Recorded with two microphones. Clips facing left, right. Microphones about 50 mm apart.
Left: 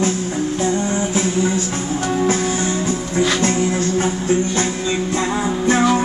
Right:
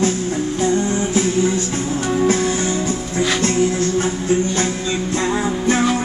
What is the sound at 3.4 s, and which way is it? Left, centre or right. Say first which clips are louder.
Music: right 1 dB; centre.